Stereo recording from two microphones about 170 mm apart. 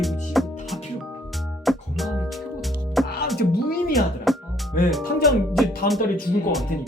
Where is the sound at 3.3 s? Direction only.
65° left (ahead or behind).